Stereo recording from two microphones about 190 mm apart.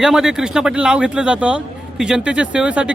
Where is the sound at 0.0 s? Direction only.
5° right (ahead or behind).